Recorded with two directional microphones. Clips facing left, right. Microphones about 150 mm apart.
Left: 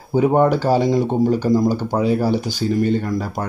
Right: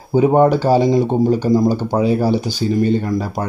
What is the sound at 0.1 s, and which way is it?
Speech, 15° right (ahead or behind).